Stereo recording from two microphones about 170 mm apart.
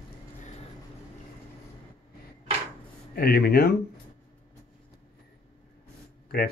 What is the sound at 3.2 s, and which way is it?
Speech, 65° left (ahead or behind).